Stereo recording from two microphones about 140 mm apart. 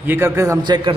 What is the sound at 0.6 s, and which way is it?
Speech, 30° right (ahead or behind).